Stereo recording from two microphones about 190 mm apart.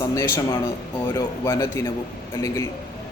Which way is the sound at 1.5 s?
15° left (ahead or behind).